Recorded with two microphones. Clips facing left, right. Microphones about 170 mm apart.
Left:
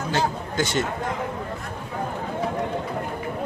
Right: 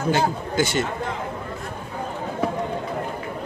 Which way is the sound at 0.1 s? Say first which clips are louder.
Right 3 dB; 5° right (ahead or behind).